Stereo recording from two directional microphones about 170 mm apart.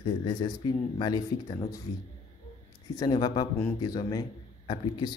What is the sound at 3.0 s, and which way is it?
A man's voice, 25° left (ahead or behind).